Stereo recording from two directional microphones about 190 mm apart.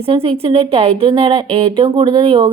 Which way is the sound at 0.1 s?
30° right (ahead or behind).